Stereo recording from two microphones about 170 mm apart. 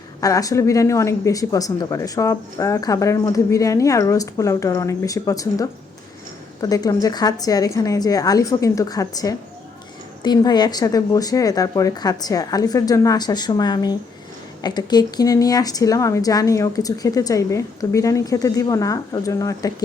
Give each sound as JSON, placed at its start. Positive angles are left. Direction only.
{"t": 0.2, "sound": "a woman's voice", "side_deg": 20}